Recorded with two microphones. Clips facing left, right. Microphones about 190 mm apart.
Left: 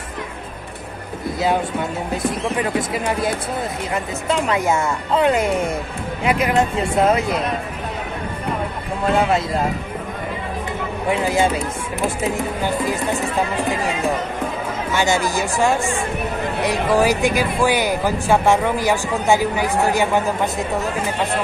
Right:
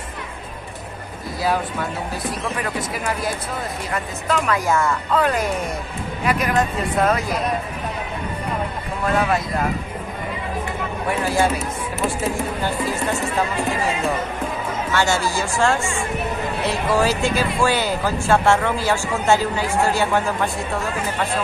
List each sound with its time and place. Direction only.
1.4 s speech: 20° left (ahead or behind)
3.9 s speech: 25° left (ahead or behind)
11.1 s speech: 20° left (ahead or behind)
12.6 s speech: 15° left (ahead or behind)
14.9 s speech: 15° left (ahead or behind)